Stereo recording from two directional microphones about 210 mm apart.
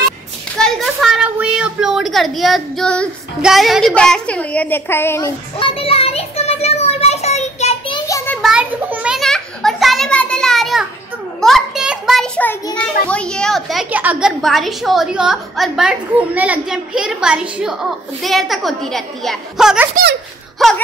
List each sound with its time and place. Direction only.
0.6 s a child's voice: centre (ahead or behind)
5.6 s a sound: 25° left (ahead or behind)
8.4 s children playing: 5° right (ahead or behind)
11.4 s a child's voice: centre (ahead or behind)